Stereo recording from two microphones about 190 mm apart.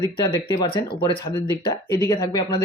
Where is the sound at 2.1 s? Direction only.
20° left (ahead or behind).